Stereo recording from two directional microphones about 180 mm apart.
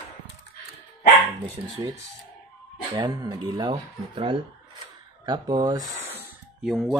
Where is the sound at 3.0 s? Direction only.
20° right (ahead or behind).